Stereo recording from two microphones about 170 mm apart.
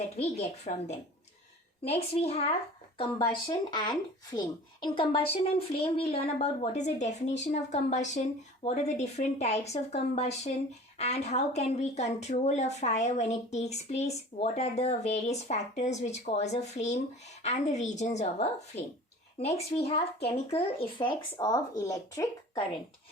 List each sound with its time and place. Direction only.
0.2 s speech: 40° left (ahead or behind)
3.2 s speech: 25° left (ahead or behind); by 18.4 s 40° left (ahead or behind)
19.5 s speech: 35° left (ahead or behind); by 22.3 s 20° left (ahead or behind)